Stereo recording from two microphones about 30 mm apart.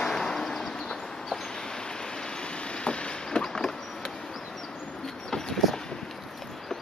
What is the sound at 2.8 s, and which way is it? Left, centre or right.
Vehicle, left.